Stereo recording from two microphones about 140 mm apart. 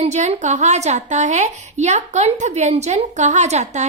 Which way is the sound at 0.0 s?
50° right (ahead or behind).